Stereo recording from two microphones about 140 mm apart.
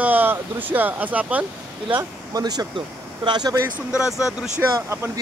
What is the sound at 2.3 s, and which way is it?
Speech, 30° right (ahead or behind).